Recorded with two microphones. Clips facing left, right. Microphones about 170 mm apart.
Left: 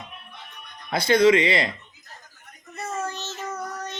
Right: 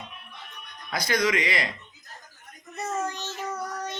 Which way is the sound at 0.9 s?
25° left (ahead or behind).